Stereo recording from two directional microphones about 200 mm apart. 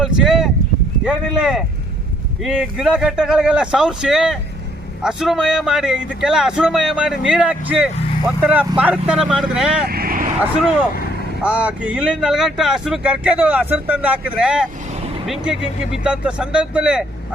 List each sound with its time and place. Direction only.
0.0 s a sound: centre (ahead or behind)
1.0 s speech: 5° right (ahead or behind)
9.8 s vehicle: 50° right (ahead or behind)
11.4 s speech: 5° right (ahead or behind)